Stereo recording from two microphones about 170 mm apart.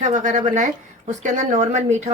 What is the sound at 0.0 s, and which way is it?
Speech, 45° right (ahead or behind).